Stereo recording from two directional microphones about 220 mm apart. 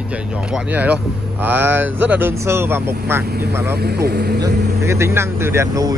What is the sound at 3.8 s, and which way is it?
Speech, 45° right (ahead or behind).